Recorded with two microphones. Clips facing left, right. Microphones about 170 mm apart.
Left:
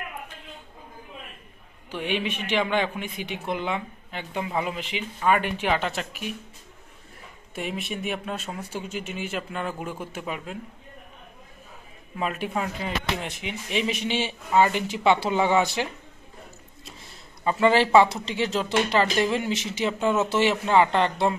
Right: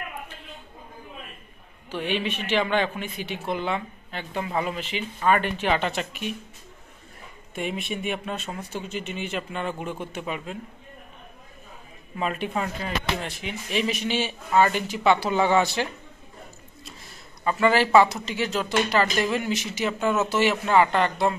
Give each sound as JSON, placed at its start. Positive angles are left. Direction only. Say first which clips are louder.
{"t": 1.9, "sound": "speech", "louder": "right 1 dB", "side_deg": 10}
{"t": 7.5, "sound": "speech", "louder": "right 1 dB", "side_deg": 0}
{"t": 12.2, "sound": "speech", "louder": "right 1 dB", "side_deg": 5}
{"t": 12.8, "sound": "speech", "louder": "even", "side_deg": 15}
{"t": 17.5, "sound": "speech", "louder": "left 1 dB", "side_deg": 25}